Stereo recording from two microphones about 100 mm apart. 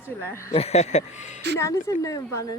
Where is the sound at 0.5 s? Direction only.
90° left.